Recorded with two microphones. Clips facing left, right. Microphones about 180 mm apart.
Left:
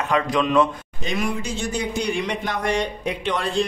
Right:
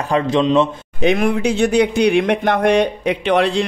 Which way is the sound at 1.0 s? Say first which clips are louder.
Right 10 dB; 60° right (ahead or behind).